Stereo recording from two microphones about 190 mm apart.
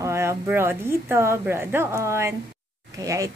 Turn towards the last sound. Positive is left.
turn(degrees=-15)  # may be behind; listen again after turning